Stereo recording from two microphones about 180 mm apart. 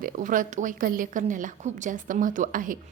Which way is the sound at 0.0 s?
45° right (ahead or behind).